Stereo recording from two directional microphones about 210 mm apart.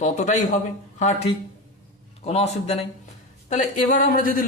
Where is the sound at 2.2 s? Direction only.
30° left (ahead or behind).